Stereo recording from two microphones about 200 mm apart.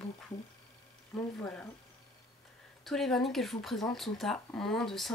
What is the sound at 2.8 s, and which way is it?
Speech, centre (ahead or behind).